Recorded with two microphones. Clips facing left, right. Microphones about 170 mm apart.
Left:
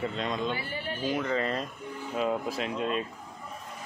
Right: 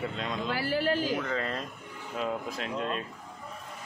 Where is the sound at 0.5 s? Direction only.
90° right.